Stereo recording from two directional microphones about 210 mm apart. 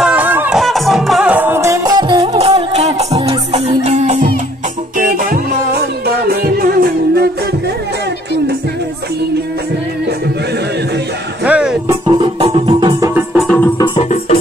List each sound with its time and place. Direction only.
0.0 s music: 5° right (ahead or behind); by 7.2 s 45° right (ahead or behind)
11.4 s music: 5° right (ahead or behind)
11.9 s music: 20° right (ahead or behind)
13.1 s music: 10° right (ahead or behind)
13.5 s music: 10° left (ahead or behind)
13.7 s music: 25° left (ahead or behind)